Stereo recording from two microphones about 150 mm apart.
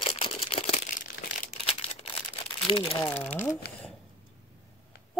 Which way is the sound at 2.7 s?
35° left (ahead or behind).